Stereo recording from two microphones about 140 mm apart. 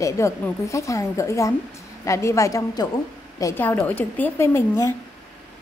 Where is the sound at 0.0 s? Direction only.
20° left (ahead or behind).